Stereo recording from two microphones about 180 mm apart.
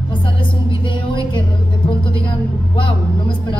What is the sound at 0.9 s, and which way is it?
Speech, 25° left (ahead or behind).